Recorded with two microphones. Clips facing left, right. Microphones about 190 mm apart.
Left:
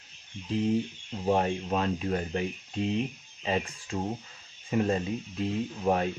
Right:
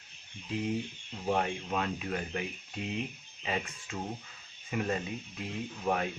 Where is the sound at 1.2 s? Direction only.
35° left (ahead or behind).